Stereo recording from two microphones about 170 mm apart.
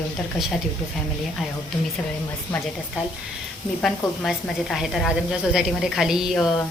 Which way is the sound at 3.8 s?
Centre (ahead or behind).